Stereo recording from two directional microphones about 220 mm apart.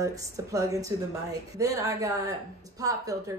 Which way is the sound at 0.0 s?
15° right (ahead or behind).